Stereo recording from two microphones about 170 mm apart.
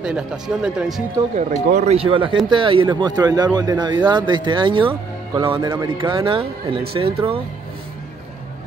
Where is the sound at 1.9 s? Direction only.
35° right (ahead or behind).